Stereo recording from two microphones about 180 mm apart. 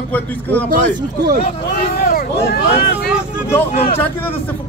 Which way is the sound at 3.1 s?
5° right (ahead or behind).